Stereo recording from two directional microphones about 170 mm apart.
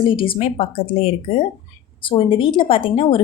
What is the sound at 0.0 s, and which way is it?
A woman's voice, 30° left (ahead or behind).